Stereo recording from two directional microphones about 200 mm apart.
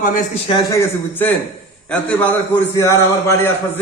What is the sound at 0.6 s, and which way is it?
A man's voice, 15° left (ahead or behind).